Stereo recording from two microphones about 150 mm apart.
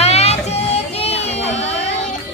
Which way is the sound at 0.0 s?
45° left (ahead or behind).